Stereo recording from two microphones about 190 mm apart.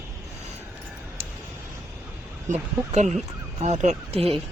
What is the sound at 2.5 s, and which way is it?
Speech, 35° right (ahead or behind).